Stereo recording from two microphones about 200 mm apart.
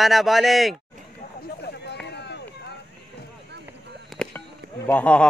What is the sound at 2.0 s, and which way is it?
Run, 55° left (ahead or behind).